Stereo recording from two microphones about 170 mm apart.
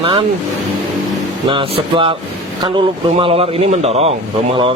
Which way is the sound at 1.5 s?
30° right (ahead or behind).